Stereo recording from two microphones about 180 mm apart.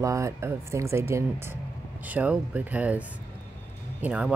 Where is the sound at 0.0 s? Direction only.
15° right (ahead or behind).